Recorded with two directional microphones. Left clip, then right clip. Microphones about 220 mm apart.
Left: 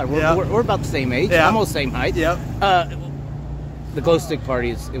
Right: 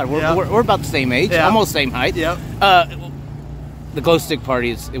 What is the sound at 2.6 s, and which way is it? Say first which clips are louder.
Speech: right 5 dB; 20° right (ahead or behind).